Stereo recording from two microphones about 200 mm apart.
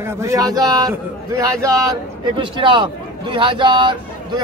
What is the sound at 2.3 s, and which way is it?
Speech, 25° right (ahead or behind).